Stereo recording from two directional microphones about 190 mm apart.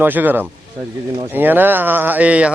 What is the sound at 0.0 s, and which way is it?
A man's voice, 10° right (ahead or behind).